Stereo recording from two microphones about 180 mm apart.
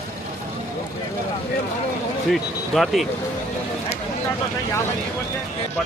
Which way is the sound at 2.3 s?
Centre (ahead or behind).